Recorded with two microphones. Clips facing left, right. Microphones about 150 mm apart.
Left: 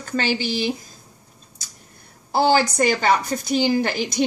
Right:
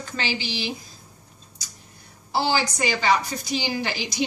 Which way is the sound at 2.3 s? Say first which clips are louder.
Left 6 dB; 45° left (ahead or behind).